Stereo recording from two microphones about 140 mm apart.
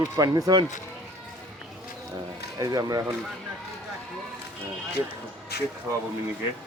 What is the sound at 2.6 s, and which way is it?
Speech, 25° right (ahead or behind).